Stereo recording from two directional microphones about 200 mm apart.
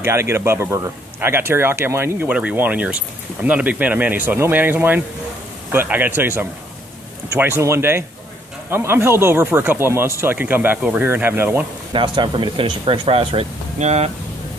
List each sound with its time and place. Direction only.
0.0 s speech: 15° right (ahead or behind)
11.9 s speech: 25° right (ahead or behind)